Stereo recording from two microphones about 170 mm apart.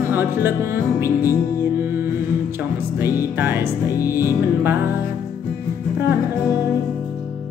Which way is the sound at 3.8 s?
20° left (ahead or behind).